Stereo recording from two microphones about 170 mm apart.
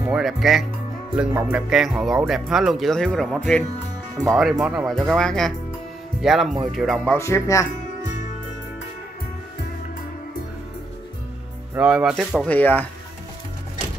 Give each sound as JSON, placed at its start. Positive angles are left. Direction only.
{"t": 0.0, "sound": "speech", "side_deg": 0}
{"t": 7.2, "sound": "music", "side_deg": 15}
{"t": 11.7, "sound": "speech", "side_deg": -5}
{"t": 12.4, "sound": "music", "side_deg": 10}